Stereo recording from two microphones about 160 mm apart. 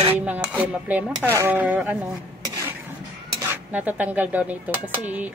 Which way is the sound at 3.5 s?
10° right (ahead or behind).